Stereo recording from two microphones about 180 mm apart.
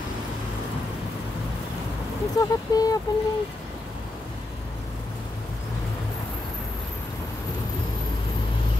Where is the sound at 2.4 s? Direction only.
20° left (ahead or behind).